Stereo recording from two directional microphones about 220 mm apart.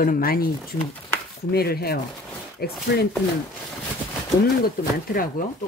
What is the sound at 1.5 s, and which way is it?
Speech, 45° left (ahead or behind).